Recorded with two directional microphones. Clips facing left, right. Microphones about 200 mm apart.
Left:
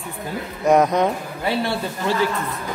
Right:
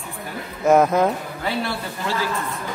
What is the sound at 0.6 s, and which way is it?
Speech, centre (ahead or behind).